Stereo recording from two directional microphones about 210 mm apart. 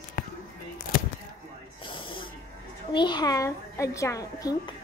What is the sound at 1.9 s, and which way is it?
A child's voice, 25° left (ahead or behind).